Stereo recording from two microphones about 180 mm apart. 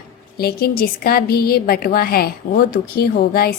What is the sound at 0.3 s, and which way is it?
A woman's voice, 60° left (ahead or behind).